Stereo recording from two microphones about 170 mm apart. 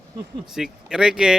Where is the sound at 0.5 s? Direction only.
5° right (ahead or behind).